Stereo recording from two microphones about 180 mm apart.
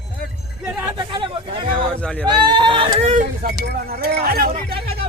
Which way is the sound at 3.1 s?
45° right (ahead or behind).